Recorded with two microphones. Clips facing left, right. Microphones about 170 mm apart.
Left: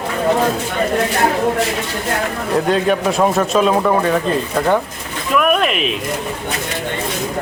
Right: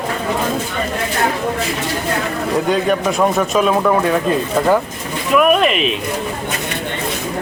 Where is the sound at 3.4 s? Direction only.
Centre (ahead or behind).